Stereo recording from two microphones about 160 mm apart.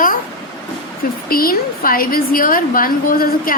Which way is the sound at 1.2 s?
65° left (ahead or behind).